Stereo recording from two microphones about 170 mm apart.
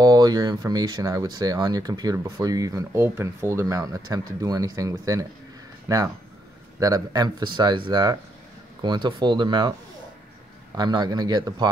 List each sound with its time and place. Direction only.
0.0 s speech: 20° right (ahead or behind)